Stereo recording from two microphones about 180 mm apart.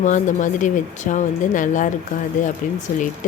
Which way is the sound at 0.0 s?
45° left (ahead or behind).